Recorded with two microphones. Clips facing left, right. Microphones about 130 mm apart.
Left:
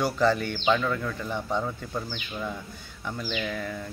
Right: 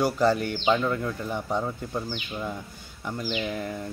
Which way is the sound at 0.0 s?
10° right (ahead or behind).